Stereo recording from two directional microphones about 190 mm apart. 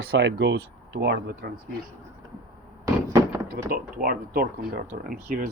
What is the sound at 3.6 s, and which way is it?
Speech, 50° right (ahead or behind).